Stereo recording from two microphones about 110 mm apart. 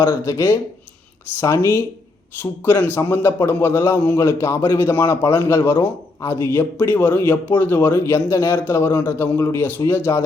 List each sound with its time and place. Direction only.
0.0 s a man's voice: 25° left (ahead or behind)